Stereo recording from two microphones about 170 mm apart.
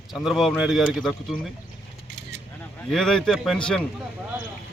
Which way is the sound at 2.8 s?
5° left (ahead or behind).